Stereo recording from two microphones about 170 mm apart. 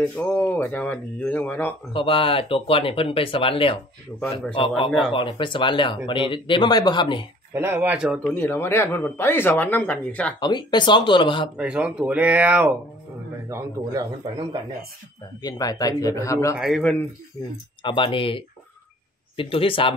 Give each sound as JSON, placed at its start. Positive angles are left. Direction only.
{"t": 0.1, "sound": "speech", "side_deg": 10}
{"t": 1.9, "sound": "speech", "side_deg": 30}
{"t": 4.1, "sound": "a man's voice", "side_deg": 0}
{"t": 4.6, "sound": "speech", "side_deg": 30}
{"t": 7.5, "sound": "speech", "side_deg": -10}
{"t": 8.4, "sound": "speech", "side_deg": 15}
{"t": 10.4, "sound": "speech", "side_deg": 25}
{"t": 11.5, "sound": "speech", "side_deg": -5}
{"t": 15.4, "sound": "speech", "side_deg": 20}
{"t": 16.5, "sound": "a man's voice", "side_deg": 0}
{"t": 17.8, "sound": "speech", "side_deg": 30}